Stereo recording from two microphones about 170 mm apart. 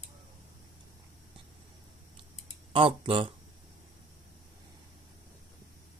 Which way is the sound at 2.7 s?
30° right (ahead or behind).